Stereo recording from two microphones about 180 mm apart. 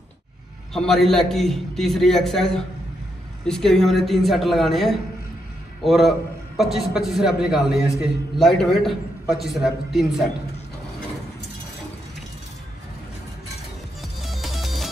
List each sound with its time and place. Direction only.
0.7 s a man's voice: centre (ahead or behind)
14.2 s music: centre (ahead or behind)